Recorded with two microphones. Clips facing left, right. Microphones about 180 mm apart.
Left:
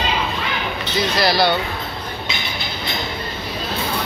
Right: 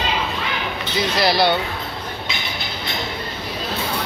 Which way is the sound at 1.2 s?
20° right (ahead or behind).